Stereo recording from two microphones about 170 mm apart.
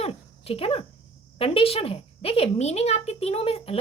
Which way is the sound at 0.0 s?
35° left (ahead or behind).